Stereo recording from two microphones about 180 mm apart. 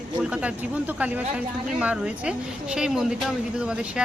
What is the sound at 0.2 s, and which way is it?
Speech, 5° right (ahead or behind).